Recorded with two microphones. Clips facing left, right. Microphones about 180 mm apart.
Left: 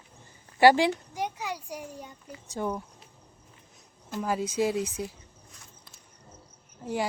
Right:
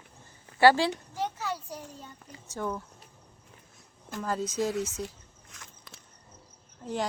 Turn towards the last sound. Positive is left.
turn(degrees=10)  # may be behind; listen again after turning